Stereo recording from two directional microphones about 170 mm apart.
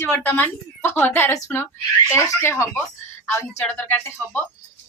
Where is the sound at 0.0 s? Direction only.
10° left (ahead or behind).